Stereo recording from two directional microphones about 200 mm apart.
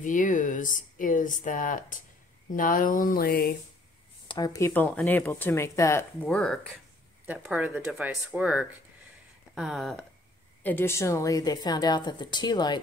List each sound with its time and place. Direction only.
0.0 s speech: 40° left (ahead or behind)
4.3 s speech: 20° left (ahead or behind)
6.2 s speech: centre (ahead or behind)
10.6 s a woman's voice: 10° left (ahead or behind)